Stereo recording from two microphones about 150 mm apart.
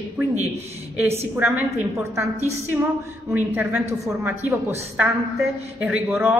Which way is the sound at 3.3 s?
10° right (ahead or behind).